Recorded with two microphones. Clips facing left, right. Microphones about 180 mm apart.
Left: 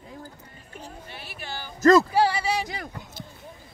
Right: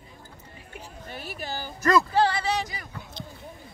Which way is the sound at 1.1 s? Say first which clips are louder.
Right 6 dB; 45° right (ahead or behind).